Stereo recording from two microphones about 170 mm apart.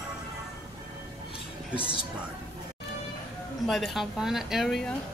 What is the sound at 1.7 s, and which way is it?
Speech, 30° left (ahead or behind).